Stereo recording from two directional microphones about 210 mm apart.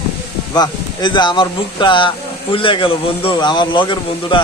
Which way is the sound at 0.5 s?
20° left (ahead or behind).